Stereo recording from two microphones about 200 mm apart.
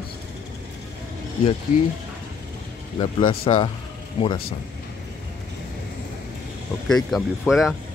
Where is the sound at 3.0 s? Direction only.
20° left (ahead or behind).